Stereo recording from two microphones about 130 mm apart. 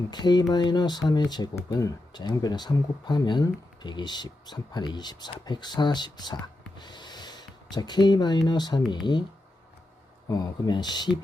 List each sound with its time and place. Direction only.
0.1 s speech: 35° left (ahead or behind)
6.7 s a sound: 35° left (ahead or behind)
8.4 s speech: 35° left (ahead or behind)
10.2 s speech: 30° left (ahead or behind)